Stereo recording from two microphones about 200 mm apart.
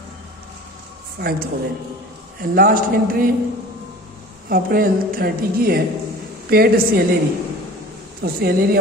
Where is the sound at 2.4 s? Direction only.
45° right (ahead or behind).